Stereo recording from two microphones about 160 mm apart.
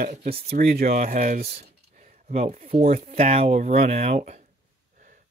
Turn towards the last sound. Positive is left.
turn(degrees=-45)  # may be behind; listen again after turning